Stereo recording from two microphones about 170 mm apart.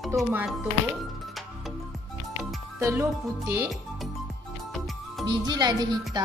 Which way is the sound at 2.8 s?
15° right (ahead or behind).